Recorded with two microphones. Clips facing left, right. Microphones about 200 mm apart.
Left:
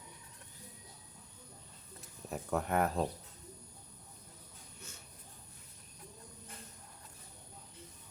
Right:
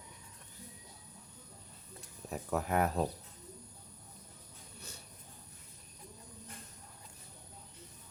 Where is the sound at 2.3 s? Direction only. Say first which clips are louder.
Even; centre (ahead or behind).